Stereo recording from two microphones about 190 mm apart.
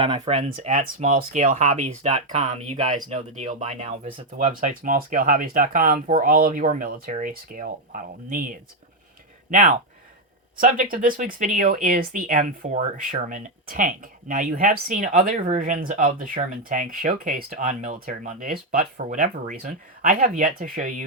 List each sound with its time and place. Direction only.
0.0 s speech: 30° right (ahead or behind)
10.9 s speech: 45° right (ahead or behind)